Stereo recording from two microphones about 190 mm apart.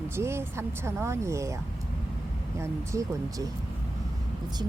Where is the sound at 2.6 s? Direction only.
15° right (ahead or behind).